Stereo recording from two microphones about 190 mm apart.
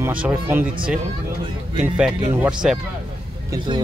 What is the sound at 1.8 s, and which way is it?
Speech, 5° right (ahead or behind).